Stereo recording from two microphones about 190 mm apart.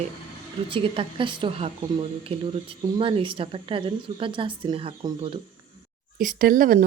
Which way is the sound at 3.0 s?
25° right (ahead or behind).